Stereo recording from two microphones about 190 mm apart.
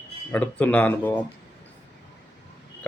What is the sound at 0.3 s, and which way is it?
Speech, 5° left (ahead or behind).